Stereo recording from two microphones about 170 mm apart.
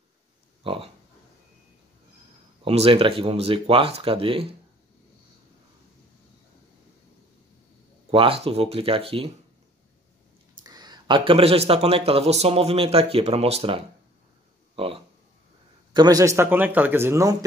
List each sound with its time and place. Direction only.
0.7 s speech: 30° right (ahead or behind)
2.6 s speech: 35° right (ahead or behind)
8.1 s speech: 35° right (ahead or behind)
10.6 s speech: 25° right (ahead or behind)
15.9 s a man's voice: 25° right (ahead or behind)